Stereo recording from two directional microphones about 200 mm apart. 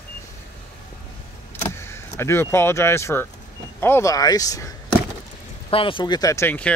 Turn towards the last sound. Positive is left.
turn(degrees=10)  # may be behind; listen again after turning